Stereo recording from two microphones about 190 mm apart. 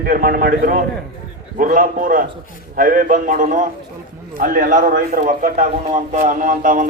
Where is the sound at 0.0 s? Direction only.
50° right (ahead or behind).